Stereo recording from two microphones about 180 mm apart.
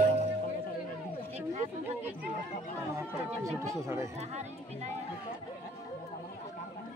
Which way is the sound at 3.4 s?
15° right (ahead or behind).